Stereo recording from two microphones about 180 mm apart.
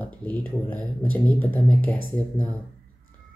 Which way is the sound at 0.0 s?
10° left (ahead or behind).